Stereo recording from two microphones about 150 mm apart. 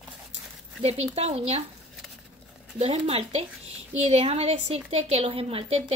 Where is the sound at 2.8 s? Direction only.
40° right (ahead or behind).